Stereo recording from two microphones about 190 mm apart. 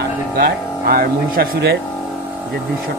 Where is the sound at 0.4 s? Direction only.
50° right (ahead or behind).